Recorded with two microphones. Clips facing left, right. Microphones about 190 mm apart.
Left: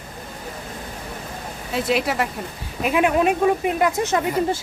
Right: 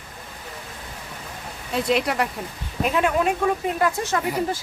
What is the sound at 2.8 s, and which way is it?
Speech, 15° left (ahead or behind).